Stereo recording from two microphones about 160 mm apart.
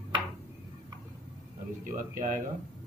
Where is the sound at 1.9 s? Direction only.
55° right (ahead or behind).